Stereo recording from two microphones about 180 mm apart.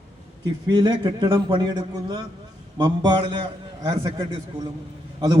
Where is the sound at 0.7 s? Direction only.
25° right (ahead or behind).